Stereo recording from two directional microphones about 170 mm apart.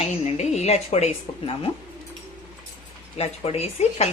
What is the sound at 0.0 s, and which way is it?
Speech, 40° left (ahead or behind).